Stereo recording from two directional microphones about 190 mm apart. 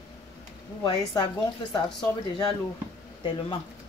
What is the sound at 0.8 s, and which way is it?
Speech, 25° left (ahead or behind).